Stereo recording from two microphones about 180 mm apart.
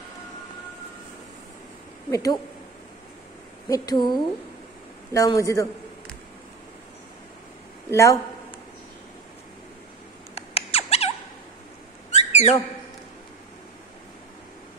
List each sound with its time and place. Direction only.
2.0 s a woman's voice: 20° left (ahead or behind)
3.6 s a woman's voice: 20° left (ahead or behind)
7.9 s speech: 15° left (ahead or behind)
10.3 s rodents: 35° left (ahead or behind)
12.1 s squawk: 40° left (ahead or behind)